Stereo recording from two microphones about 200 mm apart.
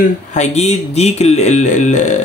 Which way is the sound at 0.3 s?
35° left (ahead or behind).